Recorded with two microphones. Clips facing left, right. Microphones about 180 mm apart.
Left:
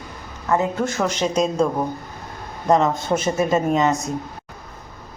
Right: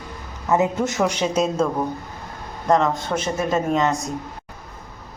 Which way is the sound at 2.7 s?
5° left (ahead or behind).